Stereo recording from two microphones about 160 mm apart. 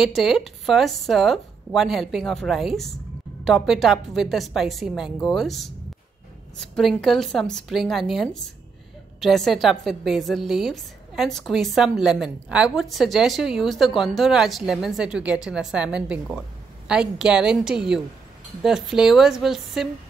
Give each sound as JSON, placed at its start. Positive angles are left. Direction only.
{"t": 0.0, "sound": "a woman's voice", "side_deg": 0}